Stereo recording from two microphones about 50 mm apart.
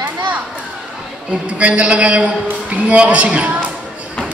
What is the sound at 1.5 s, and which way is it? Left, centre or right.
A man's voice, right.